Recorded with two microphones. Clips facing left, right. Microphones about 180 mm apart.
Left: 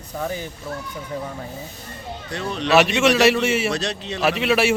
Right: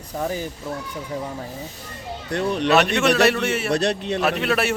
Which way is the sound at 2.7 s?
5° left (ahead or behind).